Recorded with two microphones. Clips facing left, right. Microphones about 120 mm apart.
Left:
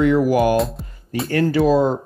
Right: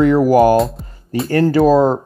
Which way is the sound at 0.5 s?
Centre (ahead or behind).